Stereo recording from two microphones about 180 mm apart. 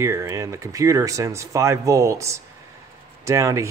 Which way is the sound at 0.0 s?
15° right (ahead or behind).